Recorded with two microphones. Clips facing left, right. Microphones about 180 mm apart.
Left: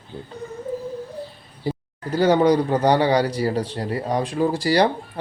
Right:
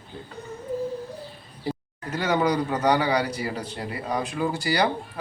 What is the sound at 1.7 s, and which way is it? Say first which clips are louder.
A man's voice: left 4 dB; 30° left (ahead or behind).